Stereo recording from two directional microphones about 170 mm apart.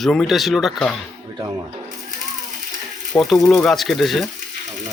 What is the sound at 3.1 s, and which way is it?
Speech, centre (ahead or behind).